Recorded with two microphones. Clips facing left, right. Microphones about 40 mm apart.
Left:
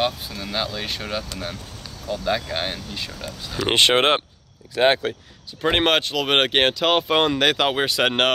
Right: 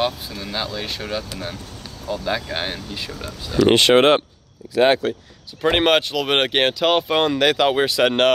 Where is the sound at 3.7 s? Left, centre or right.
Left.